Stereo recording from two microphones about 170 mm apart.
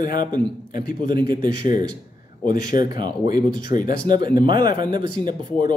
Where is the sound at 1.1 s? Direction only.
30° right (ahead or behind).